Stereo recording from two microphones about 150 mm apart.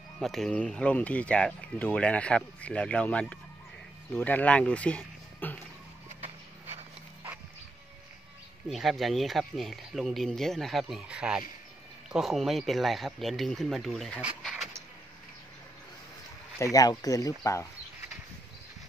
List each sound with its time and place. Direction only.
0.2 s speech: centre (ahead or behind)
8.7 s speech: centre (ahead or behind)
16.5 s speech: 20° left (ahead or behind)